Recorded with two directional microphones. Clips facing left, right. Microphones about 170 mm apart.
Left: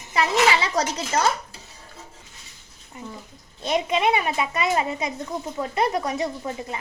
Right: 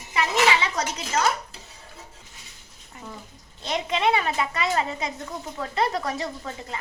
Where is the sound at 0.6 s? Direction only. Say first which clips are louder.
Left 4 dB; 35° left (ahead or behind).